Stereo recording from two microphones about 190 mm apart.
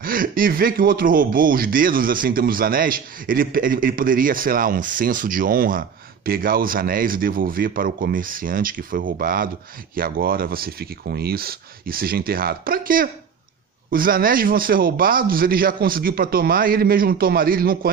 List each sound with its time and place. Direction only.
0.0 s speech: 50° right (ahead or behind)